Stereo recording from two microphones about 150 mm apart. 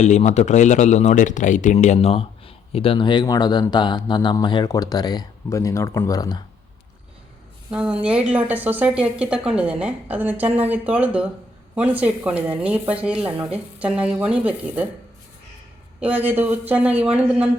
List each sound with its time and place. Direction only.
0.0 s a man's voice: 50° left (ahead or behind); by 6.4 s 25° left (ahead or behind)
7.7 s speech: 10° right (ahead or behind)
16.0 s speech: 10° right (ahead or behind)